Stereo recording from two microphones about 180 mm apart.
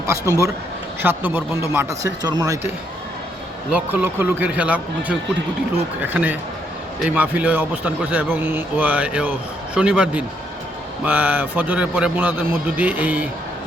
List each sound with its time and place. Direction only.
0.1 s a man's voice: 15° right (ahead or behind)
3.7 s a man's voice: 10° right (ahead or behind)